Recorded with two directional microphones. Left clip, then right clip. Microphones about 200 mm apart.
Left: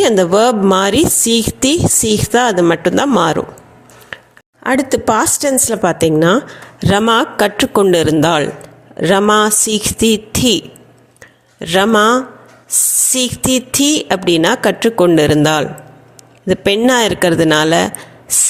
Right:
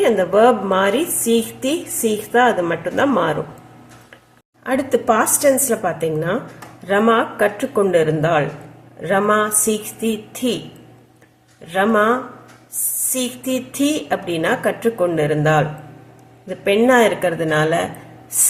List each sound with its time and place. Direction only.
0.0 s a woman's voice: 50° left (ahead or behind)
4.6 s a woman's voice: 45° left (ahead or behind)
11.6 s a woman's voice: 50° left (ahead or behind)
13.1 s a woman's voice: 50° left (ahead or behind)